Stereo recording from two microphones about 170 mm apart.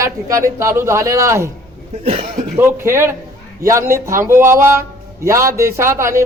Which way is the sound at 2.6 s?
15° right (ahead or behind).